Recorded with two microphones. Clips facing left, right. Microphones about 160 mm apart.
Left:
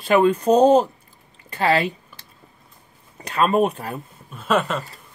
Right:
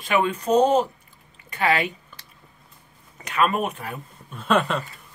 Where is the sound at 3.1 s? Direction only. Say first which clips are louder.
Left 4 dB; 35° left (ahead or behind).